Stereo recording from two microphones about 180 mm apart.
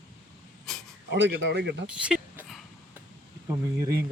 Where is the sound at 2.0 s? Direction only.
5° right (ahead or behind).